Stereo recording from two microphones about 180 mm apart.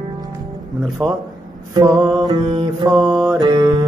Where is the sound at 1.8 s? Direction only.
25° right (ahead or behind).